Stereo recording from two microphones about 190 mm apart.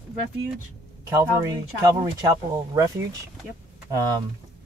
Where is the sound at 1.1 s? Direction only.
15° right (ahead or behind).